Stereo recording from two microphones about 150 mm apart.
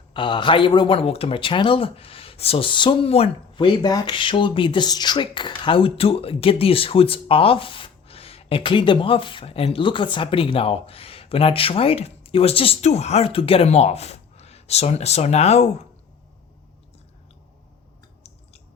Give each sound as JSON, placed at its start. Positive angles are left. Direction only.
{"t": 0.1, "sound": "speech", "side_deg": 30}